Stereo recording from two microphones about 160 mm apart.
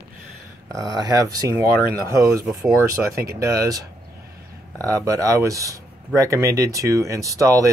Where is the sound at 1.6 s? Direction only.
70° right (ahead or behind).